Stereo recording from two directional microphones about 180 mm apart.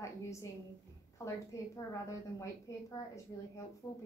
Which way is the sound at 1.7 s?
15° left (ahead or behind).